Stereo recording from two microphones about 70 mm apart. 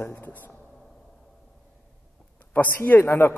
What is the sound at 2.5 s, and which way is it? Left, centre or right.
Speech, left.